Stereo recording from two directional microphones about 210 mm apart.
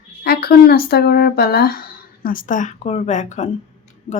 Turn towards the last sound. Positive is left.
turn(degrees=30)  # may be behind; listen again after turning